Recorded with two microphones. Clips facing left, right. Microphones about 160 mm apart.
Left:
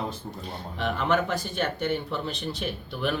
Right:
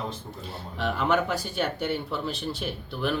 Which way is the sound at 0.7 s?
5° right (ahead or behind).